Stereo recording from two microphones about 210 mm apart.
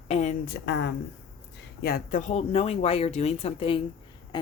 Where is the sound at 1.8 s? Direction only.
40° left (ahead or behind).